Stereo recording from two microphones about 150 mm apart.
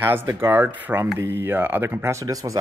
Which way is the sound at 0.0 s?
15° right (ahead or behind).